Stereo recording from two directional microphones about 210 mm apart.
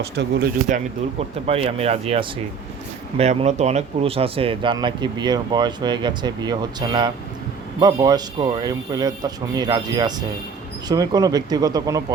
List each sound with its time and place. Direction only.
0.0 s speech: 50° right (ahead or behind)
1.5 s speech: 30° right (ahead or behind)